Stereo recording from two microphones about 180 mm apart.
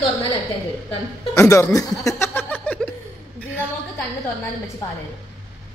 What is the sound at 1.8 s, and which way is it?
Laughter, 15° left (ahead or behind).